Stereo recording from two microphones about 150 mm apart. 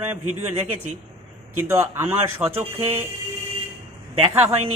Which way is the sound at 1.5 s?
15° right (ahead or behind).